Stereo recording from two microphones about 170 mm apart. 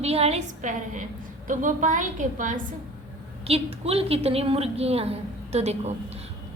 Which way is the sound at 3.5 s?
35° right (ahead or behind).